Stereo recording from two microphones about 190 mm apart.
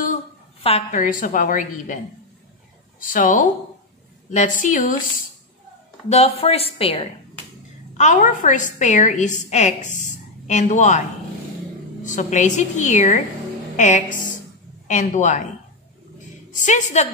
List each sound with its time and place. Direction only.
0.0 s a sound: 35° left (ahead or behind)
1.0 s a woman's voice: 45° left (ahead or behind)
3.0 s a woman's voice: 45° left (ahead or behind)
6.0 s a woman's voice: 35° left (ahead or behind)
8.0 s a woman's voice: 40° left (ahead or behind)
16.5 s a woman's voice: 40° left (ahead or behind)